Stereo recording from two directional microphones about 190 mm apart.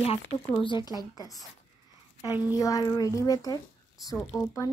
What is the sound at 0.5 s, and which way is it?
Speech, 25° left (ahead or behind).